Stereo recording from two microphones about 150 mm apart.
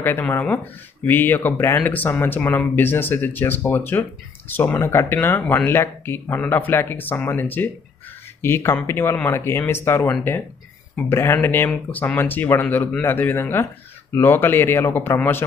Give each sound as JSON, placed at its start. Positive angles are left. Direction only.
{"t": 0.0, "sound": "speech", "side_deg": 15}